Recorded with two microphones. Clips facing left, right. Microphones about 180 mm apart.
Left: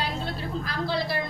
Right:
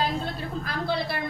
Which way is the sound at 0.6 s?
55° right (ahead or behind).